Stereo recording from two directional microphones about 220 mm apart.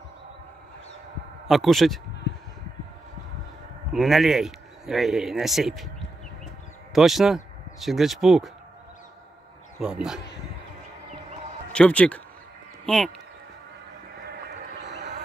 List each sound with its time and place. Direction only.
1.5 s speech: centre (ahead or behind)
3.9 s speech: centre (ahead or behind)
9.8 s speech: 5° right (ahead or behind)
11.7 s speech: 5° left (ahead or behind)
14.9 s a sound: 50° right (ahead or behind)